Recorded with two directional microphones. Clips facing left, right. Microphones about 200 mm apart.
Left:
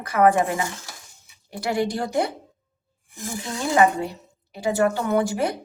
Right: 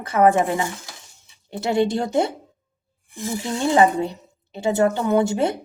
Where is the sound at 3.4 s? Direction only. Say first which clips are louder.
Right 2 dB; 25° right (ahead or behind).